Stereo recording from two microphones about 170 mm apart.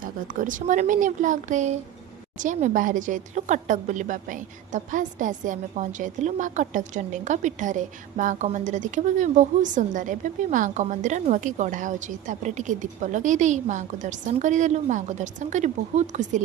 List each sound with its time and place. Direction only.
0.0 s a woman's voice: 50° right (ahead or behind)